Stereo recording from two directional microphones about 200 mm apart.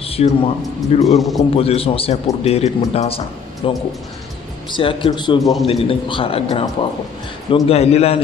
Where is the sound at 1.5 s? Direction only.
30° left (ahead or behind).